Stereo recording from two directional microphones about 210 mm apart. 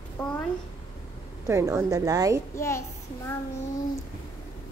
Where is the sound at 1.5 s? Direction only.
15° right (ahead or behind).